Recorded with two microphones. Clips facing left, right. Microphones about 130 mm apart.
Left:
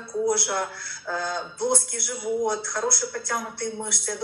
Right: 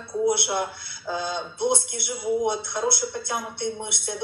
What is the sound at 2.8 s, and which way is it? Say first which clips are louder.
Speech: right 2 dB; 15° right (ahead or behind).